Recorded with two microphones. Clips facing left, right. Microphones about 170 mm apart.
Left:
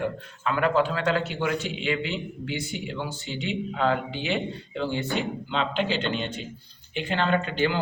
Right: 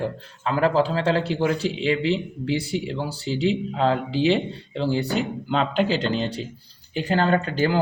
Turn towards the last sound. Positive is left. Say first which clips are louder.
# right 3 dB
turn(degrees=-40)  # may be behind; listen again after turning